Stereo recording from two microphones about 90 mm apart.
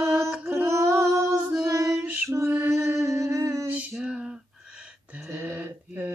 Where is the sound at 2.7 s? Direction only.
30° right (ahead or behind).